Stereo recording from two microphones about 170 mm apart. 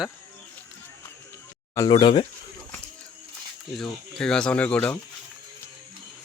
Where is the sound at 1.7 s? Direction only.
25° left (ahead or behind).